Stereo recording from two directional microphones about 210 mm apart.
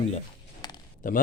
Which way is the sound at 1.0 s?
40° left (ahead or behind).